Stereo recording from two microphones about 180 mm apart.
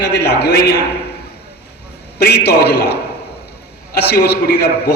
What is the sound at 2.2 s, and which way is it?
A man's voice, 65° left (ahead or behind).